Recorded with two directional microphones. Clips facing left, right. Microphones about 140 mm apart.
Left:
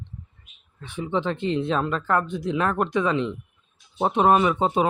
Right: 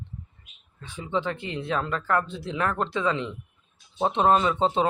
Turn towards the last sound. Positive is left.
turn(degrees=10)  # may be behind; listen again after turning